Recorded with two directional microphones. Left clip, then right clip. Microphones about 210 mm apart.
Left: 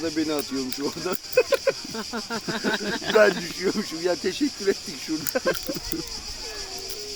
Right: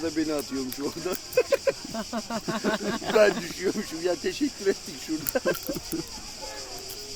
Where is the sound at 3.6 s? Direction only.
30° left (ahead or behind).